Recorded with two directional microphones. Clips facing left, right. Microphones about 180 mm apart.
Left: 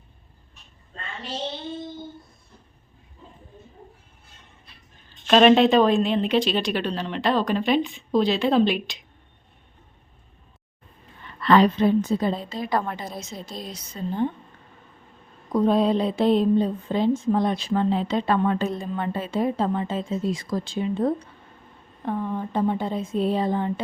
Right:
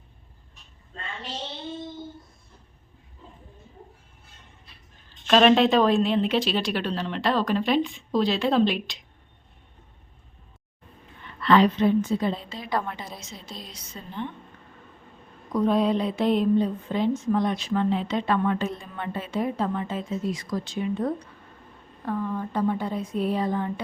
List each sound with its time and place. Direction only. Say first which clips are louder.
5.2 s a woman's voice: left 2 dB; 5° left (ahead or behind)
11.3 s speech: left 2 dB; 40° left (ahead or behind)
15.5 s a woman's voice: left 2 dB; 30° left (ahead or behind)